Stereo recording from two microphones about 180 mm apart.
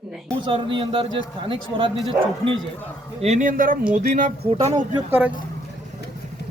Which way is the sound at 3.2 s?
40° right (ahead or behind).